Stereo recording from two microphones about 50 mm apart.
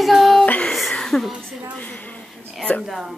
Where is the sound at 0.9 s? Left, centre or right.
Centre.